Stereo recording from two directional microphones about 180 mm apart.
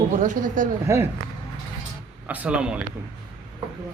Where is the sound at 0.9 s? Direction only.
15° right (ahead or behind).